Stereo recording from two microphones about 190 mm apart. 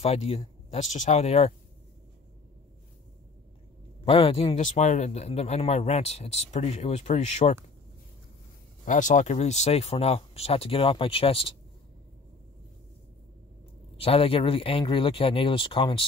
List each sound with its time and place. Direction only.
0.0 s a man's voice: 30° left (ahead or behind)
4.0 s a man's voice: 30° left (ahead or behind)
8.8 s a man's voice: 40° left (ahead or behind)
13.9 s speech: 30° left (ahead or behind)